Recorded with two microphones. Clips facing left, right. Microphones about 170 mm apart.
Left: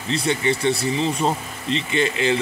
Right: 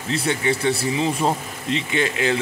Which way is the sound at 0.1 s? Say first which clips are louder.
Left 1 dB; 5° right (ahead or behind).